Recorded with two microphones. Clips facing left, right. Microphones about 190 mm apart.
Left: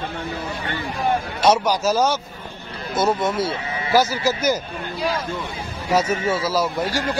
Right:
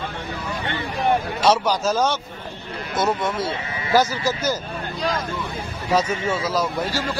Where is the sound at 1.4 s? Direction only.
10° left (ahead or behind).